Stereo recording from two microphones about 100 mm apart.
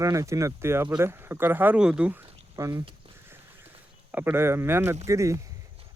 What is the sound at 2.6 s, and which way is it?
Speech, 30° right (ahead or behind).